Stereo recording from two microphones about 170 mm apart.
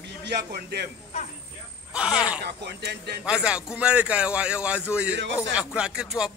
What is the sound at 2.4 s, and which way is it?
Speech, 75° right (ahead or behind).